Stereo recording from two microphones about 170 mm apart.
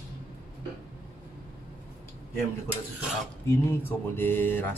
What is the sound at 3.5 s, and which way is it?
Speech, 15° left (ahead or behind).